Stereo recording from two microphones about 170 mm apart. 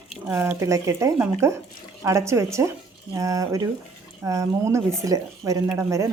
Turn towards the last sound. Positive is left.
turn(degrees=-15)  # may be behind; listen again after turning